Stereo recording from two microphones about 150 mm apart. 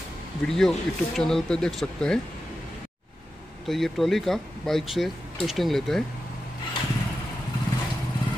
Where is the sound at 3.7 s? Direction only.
Centre (ahead or behind).